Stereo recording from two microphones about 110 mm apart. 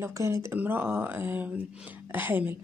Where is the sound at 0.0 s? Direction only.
25° right (ahead or behind).